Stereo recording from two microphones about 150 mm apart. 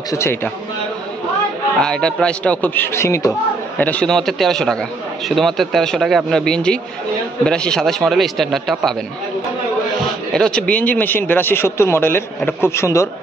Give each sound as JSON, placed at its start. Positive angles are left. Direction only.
{"t": 0.1, "sound": "speech", "side_deg": 15}
{"t": 1.8, "sound": "speech", "side_deg": 5}
{"t": 3.7, "sound": "a man's voice", "side_deg": 10}
{"t": 10.3, "sound": "speech", "side_deg": 5}